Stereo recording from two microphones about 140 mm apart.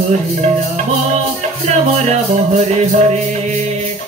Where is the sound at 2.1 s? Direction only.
55° right (ahead or behind).